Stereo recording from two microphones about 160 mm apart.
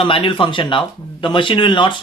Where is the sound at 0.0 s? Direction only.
30° left (ahead or behind).